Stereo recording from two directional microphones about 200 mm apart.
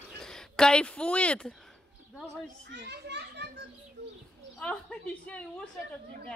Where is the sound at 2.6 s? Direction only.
60° right (ahead or behind).